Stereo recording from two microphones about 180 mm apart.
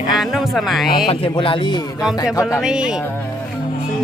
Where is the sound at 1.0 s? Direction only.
30° left (ahead or behind).